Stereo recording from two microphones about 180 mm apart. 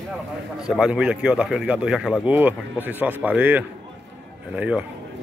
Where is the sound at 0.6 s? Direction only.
5° right (ahead or behind).